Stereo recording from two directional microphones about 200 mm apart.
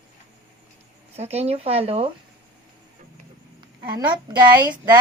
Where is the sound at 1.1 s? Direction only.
30° right (ahead or behind).